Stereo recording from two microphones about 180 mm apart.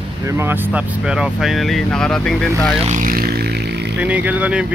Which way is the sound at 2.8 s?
45° right (ahead or behind).